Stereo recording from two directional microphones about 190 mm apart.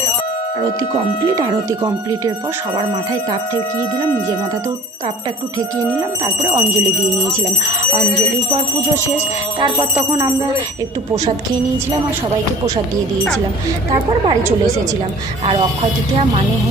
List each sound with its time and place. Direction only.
1.4 s speech: 20° right (ahead or behind)
6.2 s speech: 25° right (ahead or behind)
9.6 s speech: 25° right (ahead or behind)
13.9 s speech: 30° right (ahead or behind)